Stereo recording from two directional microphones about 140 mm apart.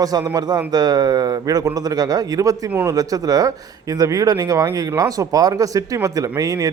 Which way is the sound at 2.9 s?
25° right (ahead or behind).